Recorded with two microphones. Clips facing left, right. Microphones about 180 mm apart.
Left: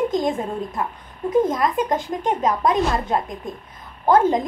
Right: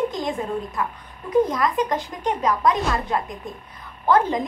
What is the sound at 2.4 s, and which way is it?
Speech, 25° left (ahead or behind).